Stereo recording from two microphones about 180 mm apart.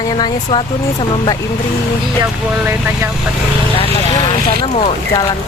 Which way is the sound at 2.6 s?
10° right (ahead or behind).